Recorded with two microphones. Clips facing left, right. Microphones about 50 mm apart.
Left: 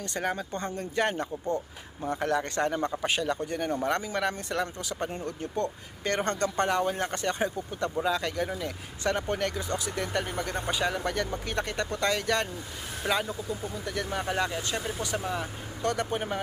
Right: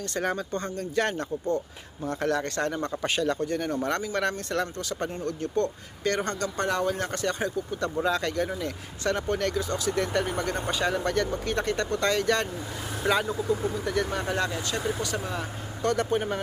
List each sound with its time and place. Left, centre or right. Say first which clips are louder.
0.0 s speech: right 2 dB; centre
6.0 s speech: even; left
6.7 s speech: even; centre
7.9 s speech: right 2 dB; centre
9.9 s speech: right 7 dB; centre
13.8 s speech: right 3 dB; centre
15.3 s speech: even; centre